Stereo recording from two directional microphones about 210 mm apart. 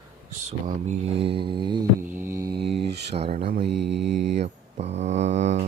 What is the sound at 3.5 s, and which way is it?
Mantra, 55° right (ahead or behind).